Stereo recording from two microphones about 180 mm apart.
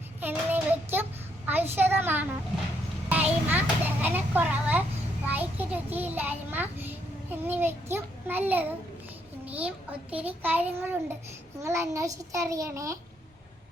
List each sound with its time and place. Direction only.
0.2 s child singing: 10° right (ahead or behind)
1.5 s a child's voice: 10° right (ahead or behind)
3.1 s a sound: 10° right (ahead or behind)
5.3 s a child's voice: 10° right (ahead or behind)